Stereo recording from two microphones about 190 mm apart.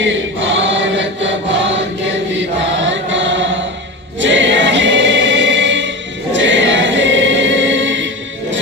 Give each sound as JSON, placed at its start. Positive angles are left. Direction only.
{"t": 0.0, "sound": "choir", "side_deg": -75}
{"t": 2.3, "sound": "chant", "side_deg": -75}
{"t": 4.2, "sound": "choir", "side_deg": -75}